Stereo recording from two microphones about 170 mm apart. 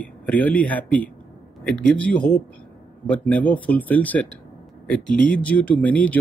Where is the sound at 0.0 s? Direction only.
10° left (ahead or behind).